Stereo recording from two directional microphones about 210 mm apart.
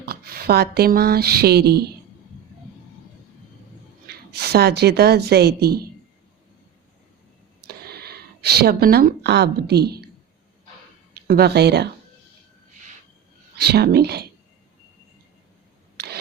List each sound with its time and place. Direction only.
0.0 s speech: 45° right (ahead or behind)
4.0 s a woman's voice: 50° right (ahead or behind)
7.7 s speech: 50° right (ahead or behind)
11.1 s speech: 50° right (ahead or behind)
13.6 s speech: 50° right (ahead or behind)